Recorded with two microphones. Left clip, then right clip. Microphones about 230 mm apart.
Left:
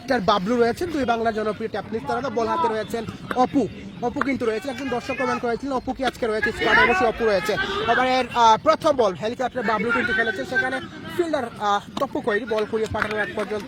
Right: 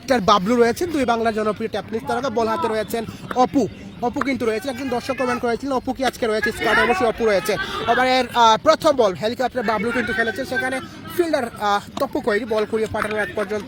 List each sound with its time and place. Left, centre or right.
0.1 s speech: right